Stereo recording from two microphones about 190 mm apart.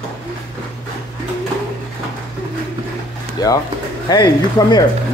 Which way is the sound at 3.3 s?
20° left (ahead or behind).